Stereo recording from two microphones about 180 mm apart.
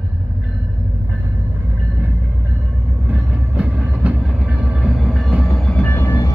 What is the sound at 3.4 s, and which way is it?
Train, 5° right (ahead or behind).